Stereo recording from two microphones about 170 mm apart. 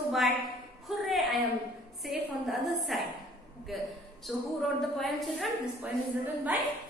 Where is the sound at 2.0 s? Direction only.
Centre (ahead or behind).